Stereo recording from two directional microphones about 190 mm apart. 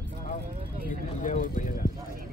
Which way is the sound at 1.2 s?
45° left (ahead or behind).